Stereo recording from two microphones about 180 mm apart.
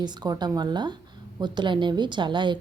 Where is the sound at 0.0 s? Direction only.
25° right (ahead or behind).